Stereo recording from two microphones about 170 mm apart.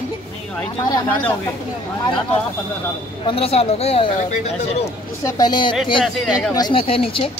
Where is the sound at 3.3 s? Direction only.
35° left (ahead or behind).